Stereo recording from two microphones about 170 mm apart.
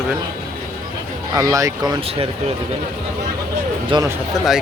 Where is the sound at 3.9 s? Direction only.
30° right (ahead or behind).